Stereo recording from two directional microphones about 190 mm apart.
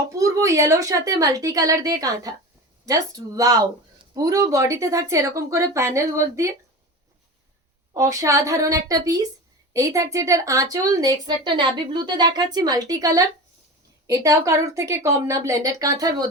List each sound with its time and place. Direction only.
0.1 s speech: 15° right (ahead or behind)
7.9 s speech: 15° right (ahead or behind)